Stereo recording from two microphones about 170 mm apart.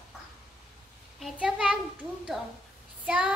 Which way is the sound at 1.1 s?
Centre (ahead or behind).